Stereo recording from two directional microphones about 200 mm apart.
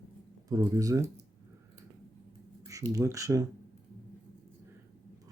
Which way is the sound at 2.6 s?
15° right (ahead or behind).